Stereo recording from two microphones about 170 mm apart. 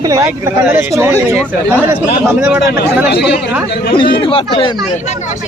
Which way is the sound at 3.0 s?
75° left (ahead or behind).